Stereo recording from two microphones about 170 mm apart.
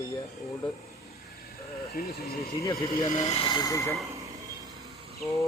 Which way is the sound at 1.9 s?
70° left (ahead or behind).